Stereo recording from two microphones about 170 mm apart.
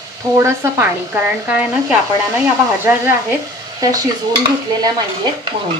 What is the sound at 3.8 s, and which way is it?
Dishes, 20° right (ahead or behind).